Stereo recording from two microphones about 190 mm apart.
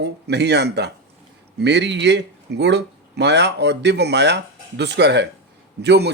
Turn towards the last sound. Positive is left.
turn(degrees=-60)  # may be behind; listen again after turning